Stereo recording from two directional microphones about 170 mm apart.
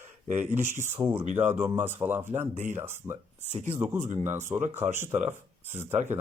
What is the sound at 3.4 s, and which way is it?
Speech, 40° right (ahead or behind).